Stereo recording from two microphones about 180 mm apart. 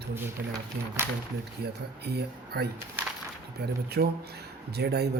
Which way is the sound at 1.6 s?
65° right (ahead or behind).